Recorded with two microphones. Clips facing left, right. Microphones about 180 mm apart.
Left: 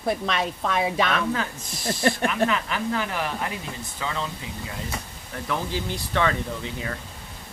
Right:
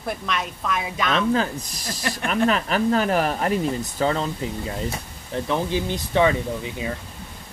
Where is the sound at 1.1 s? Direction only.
30° right (ahead or behind).